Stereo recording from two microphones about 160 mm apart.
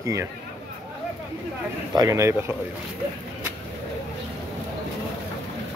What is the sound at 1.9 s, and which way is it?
Speech, 20° right (ahead or behind).